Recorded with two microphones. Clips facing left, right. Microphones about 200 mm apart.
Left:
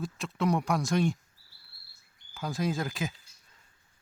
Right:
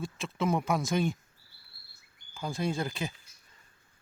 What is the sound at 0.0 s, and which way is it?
Speech, centre (ahead or behind).